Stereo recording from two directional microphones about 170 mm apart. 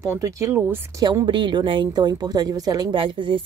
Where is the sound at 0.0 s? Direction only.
20° right (ahead or behind).